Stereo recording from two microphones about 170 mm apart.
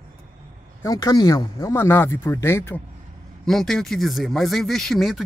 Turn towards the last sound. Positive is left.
turn(degrees=0)  # may be behind; listen again after turning